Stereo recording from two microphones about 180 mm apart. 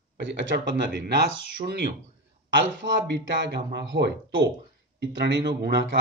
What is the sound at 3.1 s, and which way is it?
Speech, 70° right (ahead or behind).